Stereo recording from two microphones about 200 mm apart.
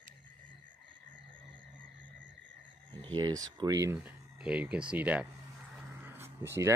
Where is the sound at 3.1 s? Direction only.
20° right (ahead or behind).